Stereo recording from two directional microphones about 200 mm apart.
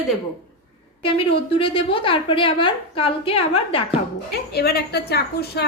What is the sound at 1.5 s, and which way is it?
A woman's voice, 25° left (ahead or behind).